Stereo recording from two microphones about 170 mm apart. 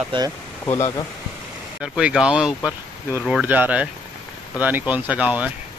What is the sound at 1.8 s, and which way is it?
Speech, 5° right (ahead or behind).